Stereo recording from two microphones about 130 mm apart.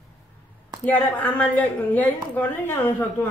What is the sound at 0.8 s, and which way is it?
A woman's voice, 15° left (ahead or behind).